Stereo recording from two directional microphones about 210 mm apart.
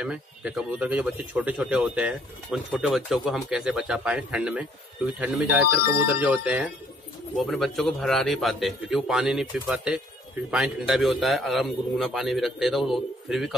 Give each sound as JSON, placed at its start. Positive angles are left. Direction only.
{"t": 0.0, "sound": "a man's voice", "side_deg": -5}